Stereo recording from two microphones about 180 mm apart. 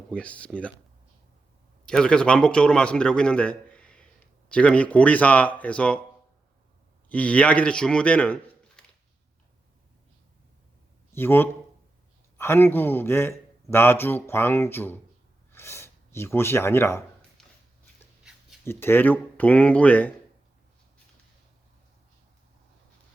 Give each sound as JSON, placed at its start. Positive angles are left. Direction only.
{"t": 0.1, "sound": "speech", "side_deg": 5}
{"t": 1.8, "sound": "a man's voice", "side_deg": 5}
{"t": 7.1, "sound": "speech", "side_deg": 5}
{"t": 11.1, "sound": "speech", "side_deg": 10}
{"t": 17.4, "sound": "a sound", "side_deg": 5}
{"t": 18.6, "sound": "speech", "side_deg": 10}